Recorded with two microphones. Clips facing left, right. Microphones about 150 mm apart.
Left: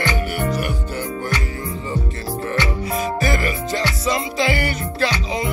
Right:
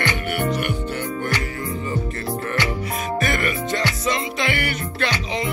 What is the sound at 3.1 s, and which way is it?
Music, 30° left (ahead or behind).